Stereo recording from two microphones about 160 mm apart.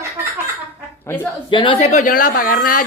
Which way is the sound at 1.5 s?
30° left (ahead or behind).